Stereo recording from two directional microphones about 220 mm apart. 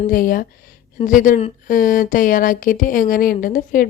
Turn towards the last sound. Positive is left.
turn(degrees=40)  # may be behind; listen again after turning